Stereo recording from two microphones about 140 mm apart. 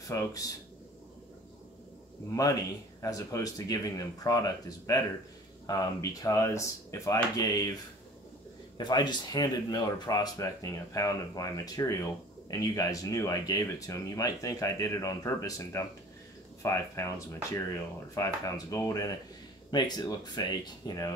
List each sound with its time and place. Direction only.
0.0 s speech: 25° left (ahead or behind)
2.4 s speech: 25° left (ahead or behind)
8.7 s speech: 30° left (ahead or behind)